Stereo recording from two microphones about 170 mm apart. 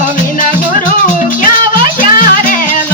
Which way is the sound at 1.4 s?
55° left (ahead or behind).